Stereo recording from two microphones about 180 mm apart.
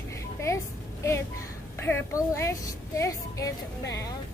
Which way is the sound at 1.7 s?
15° left (ahead or behind).